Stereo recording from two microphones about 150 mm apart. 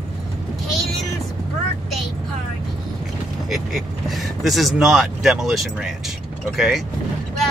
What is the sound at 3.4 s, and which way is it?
Speech, centre (ahead or behind).